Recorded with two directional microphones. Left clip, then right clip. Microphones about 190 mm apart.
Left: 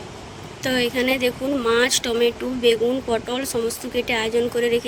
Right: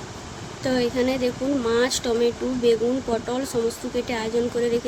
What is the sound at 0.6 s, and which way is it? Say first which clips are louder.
Speech: left 2 dB; 40° left (ahead or behind).